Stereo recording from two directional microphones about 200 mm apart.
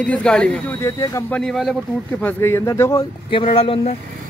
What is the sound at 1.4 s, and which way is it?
Speech, centre (ahead or behind).